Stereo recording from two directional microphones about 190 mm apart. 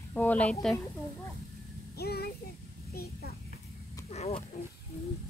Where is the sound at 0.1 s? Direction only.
10° left (ahead or behind).